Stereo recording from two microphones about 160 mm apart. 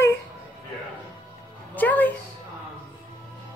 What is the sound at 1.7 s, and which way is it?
Music, 10° left (ahead or behind).